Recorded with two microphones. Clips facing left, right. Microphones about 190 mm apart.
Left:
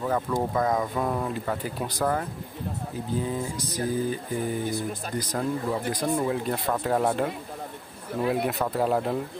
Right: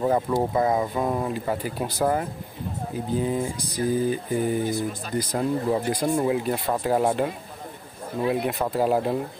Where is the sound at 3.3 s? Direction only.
15° right (ahead or behind).